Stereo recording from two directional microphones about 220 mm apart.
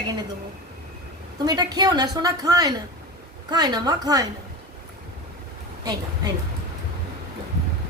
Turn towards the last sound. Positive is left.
turn(degrees=-15)  # may be behind; listen again after turning